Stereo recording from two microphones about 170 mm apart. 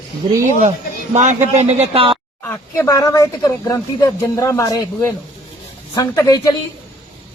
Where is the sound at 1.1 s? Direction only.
45° right (ahead or behind).